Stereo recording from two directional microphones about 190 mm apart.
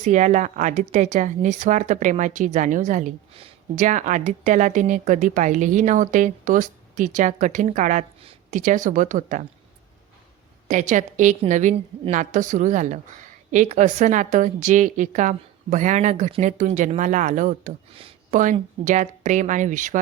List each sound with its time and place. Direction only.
0.0 s speech: 40° right (ahead or behind)
10.7 s speech: 40° right (ahead or behind)